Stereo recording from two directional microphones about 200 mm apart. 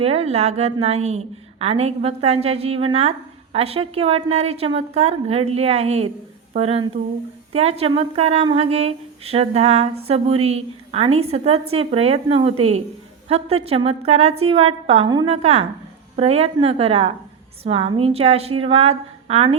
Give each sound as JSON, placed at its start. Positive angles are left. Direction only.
{"t": 0.0, "sound": "a woman's voice", "side_deg": -30}